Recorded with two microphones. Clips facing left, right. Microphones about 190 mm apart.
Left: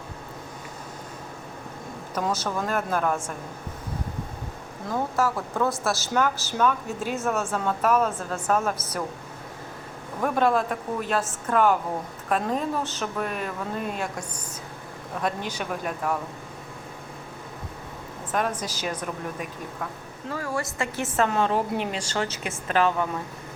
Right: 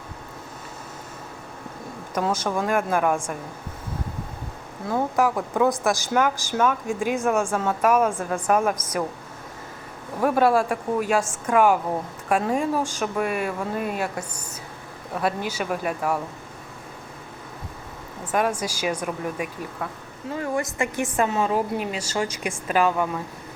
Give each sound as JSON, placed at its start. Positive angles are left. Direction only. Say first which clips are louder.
{"t": 2.1, "sound": "a woman's voice", "louder": "right 3 dB", "side_deg": -10}
{"t": 4.9, "sound": "a woman's voice", "louder": "right 3 dB", "side_deg": -15}
{"t": 10.2, "sound": "a woman's voice", "louder": "right 3 dB", "side_deg": -5}
{"t": 18.3, "sound": "a woman's voice", "louder": "right 4 dB", "side_deg": -10}